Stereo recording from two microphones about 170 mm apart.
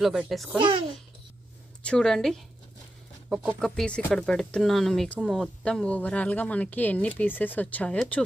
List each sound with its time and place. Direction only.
0.0 s a woman's voice: 5° right (ahead or behind)
0.6 s a child's voice: 30° right (ahead or behind)
1.8 s a woman's voice: 5° left (ahead or behind)
3.6 s speech: 5° left (ahead or behind)